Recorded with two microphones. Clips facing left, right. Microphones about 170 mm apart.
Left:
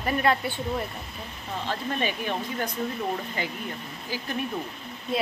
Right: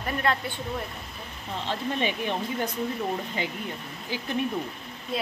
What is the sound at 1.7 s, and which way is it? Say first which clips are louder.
Speech: right 1 dB; 20° right (ahead or behind).